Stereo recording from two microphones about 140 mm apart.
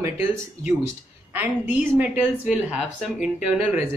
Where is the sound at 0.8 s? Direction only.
15° right (ahead or behind).